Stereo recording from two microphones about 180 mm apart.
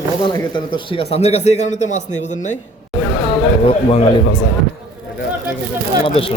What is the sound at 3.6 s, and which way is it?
Speech, 30° left (ahead or behind).